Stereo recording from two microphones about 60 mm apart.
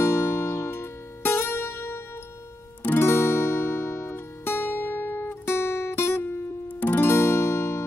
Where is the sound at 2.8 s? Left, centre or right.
Left.